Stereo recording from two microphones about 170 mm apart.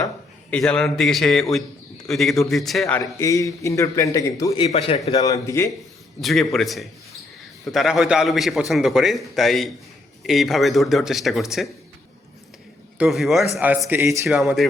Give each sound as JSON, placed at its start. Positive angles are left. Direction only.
{"t": 0.5, "sound": "a man's voice", "side_deg": 5}
{"t": 3.0, "sound": "a man's voice", "side_deg": 20}
{"t": 4.5, "sound": "a man's voice", "side_deg": 35}
{"t": 5.2, "sound": "a man's voice", "side_deg": 20}
{"t": 6.2, "sound": "a man's voice", "side_deg": 0}
{"t": 13.0, "sound": "a man's voice", "side_deg": 0}
{"t": 13.6, "sound": "a man's voice", "side_deg": -10}
{"t": 14.3, "sound": "a man's voice", "side_deg": 0}